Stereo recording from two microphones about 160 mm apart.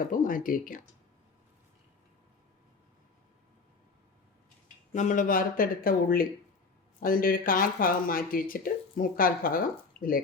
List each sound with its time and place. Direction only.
0.1 s speech: 60° left (ahead or behind)
4.9 s speech: 55° left (ahead or behind)